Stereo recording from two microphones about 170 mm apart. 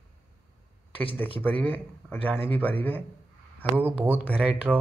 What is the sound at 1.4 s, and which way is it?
Speech, 10° left (ahead or behind).